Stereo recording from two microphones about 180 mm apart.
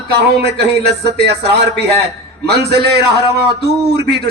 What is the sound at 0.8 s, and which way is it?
Speech, 65° right (ahead or behind).